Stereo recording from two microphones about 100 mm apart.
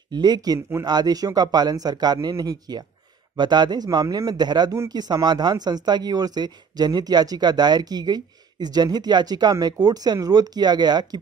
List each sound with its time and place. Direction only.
0.1 s speech: 45° right (ahead or behind)
0.6 s speech: 25° right (ahead or behind)
0.8 s speech: 40° right (ahead or behind)